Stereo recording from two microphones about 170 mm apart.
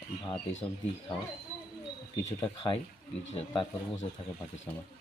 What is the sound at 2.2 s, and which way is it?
Speech, 20° left (ahead or behind).